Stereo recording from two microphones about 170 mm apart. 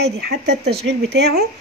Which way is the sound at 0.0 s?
75° right (ahead or behind).